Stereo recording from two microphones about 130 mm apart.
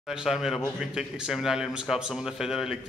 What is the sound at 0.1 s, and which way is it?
Speech, 5° right (ahead or behind).